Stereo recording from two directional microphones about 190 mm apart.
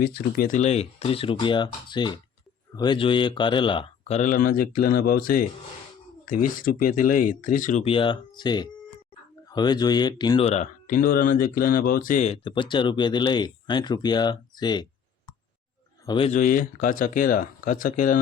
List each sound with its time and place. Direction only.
0.0 s speech: 55° left (ahead or behind); by 4.2 s 25° left (ahead or behind)
4.2 s speech: 45° left (ahead or behind); by 14.8 s 20° left (ahead or behind)
16.0 s speech: 25° left (ahead or behind)
16.3 s speech: 45° left (ahead or behind)